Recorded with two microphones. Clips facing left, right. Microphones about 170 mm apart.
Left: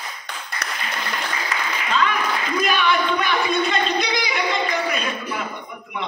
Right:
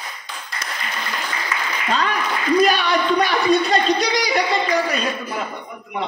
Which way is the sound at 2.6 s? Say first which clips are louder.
Right 3 dB; 35° right (ahead or behind).